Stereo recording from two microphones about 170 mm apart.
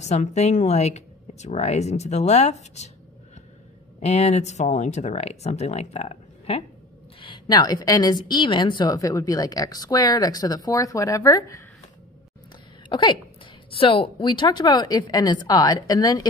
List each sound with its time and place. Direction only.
0.0 s speech: 40° left (ahead or behind)
4.0 s a woman's voice: 40° left (ahead or behind); by 11.6 s 20° left (ahead or behind)
12.9 s a woman's voice: 30° left (ahead or behind)